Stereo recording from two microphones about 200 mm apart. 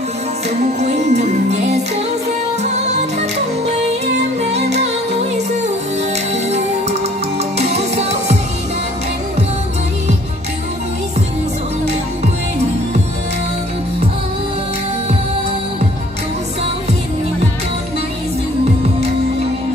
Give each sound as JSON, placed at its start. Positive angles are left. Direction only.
{"t": 0.8, "sound": "music", "side_deg": -35}
{"t": 6.3, "sound": "music", "side_deg": -35}